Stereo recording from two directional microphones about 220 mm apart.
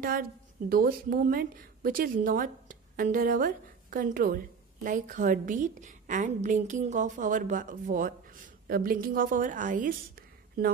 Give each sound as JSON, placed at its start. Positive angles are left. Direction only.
{"t": 0.0, "sound": "a woman's voice", "side_deg": -40}